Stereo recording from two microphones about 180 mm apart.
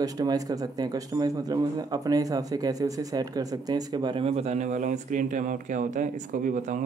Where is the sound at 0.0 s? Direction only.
20° right (ahead or behind).